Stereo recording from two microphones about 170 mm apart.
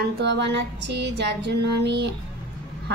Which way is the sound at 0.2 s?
90° right.